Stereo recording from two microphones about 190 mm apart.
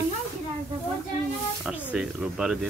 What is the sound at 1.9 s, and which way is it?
Speech, 5° right (ahead or behind).